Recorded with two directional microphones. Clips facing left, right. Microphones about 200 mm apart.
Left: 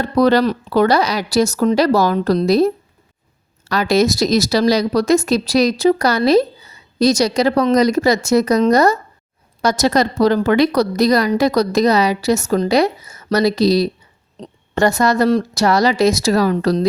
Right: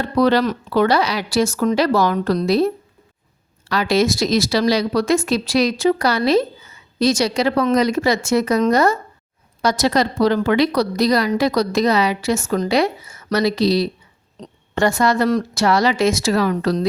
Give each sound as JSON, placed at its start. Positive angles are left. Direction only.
{"t": 0.0, "sound": "speech", "side_deg": 40}